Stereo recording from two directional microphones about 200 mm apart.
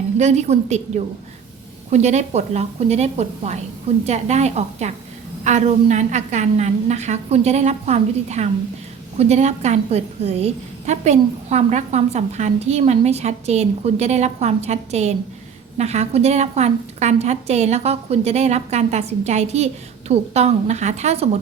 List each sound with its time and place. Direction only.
0.2 s a woman's voice: 35° right (ahead or behind)